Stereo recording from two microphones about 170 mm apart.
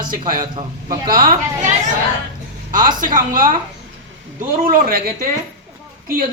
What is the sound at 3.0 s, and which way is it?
Speech, 50° right (ahead or behind).